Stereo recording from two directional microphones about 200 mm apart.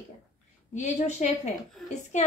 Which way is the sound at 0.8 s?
35° left (ahead or behind).